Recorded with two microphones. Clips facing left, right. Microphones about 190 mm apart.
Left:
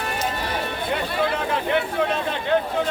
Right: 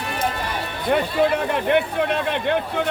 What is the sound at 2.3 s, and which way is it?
Speech, 65° right (ahead or behind).